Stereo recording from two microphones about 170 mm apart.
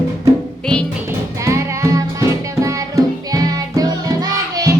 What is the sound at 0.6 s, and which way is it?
Music, 5° left (ahead or behind).